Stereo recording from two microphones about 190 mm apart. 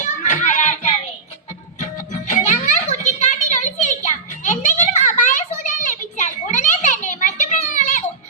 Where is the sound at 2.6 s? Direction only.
35° left (ahead or behind).